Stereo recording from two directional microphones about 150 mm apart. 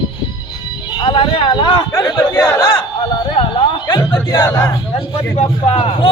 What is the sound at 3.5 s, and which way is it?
Music, 30° left (ahead or behind).